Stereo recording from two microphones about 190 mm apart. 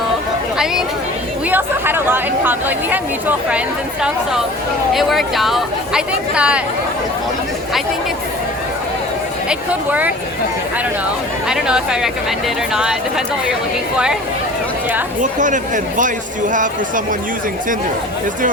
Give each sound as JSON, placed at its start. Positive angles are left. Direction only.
{"t": 0.5, "sound": "speech", "side_deg": -5}
{"t": 4.9, "sound": "speech", "side_deg": 0}
{"t": 9.5, "sound": "speech", "side_deg": -10}
{"t": 11.4, "sound": "speech", "side_deg": -5}
{"t": 15.2, "sound": "speech", "side_deg": -40}